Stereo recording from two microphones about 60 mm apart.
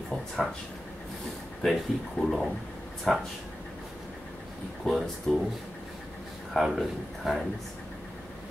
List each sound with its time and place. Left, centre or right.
1.6 s speech: centre
4.9 s speech: centre
6.5 s speech: centre